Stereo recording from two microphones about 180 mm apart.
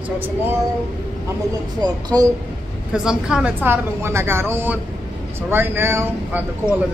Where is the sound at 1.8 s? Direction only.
20° right (ahead or behind).